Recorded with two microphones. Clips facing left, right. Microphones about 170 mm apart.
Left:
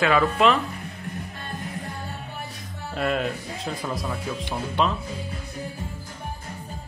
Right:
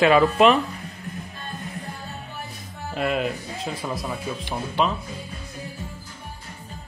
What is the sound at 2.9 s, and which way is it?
Speech, 5° right (ahead or behind).